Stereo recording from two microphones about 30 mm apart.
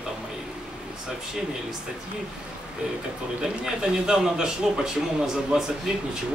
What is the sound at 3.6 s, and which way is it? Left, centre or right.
Speech, right.